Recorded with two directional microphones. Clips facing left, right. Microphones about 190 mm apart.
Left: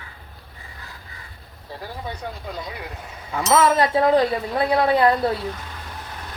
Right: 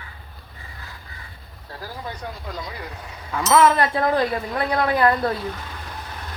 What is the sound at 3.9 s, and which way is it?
Speech, 20° left (ahead or behind).